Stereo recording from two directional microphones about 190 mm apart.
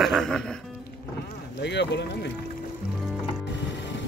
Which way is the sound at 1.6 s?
65° left (ahead or behind).